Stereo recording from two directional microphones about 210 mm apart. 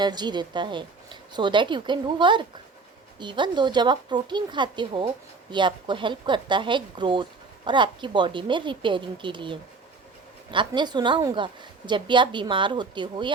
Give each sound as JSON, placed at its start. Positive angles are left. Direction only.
{"t": 0.0, "sound": "speech", "side_deg": -20}